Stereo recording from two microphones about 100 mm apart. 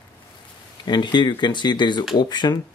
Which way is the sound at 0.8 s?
50° left (ahead or behind).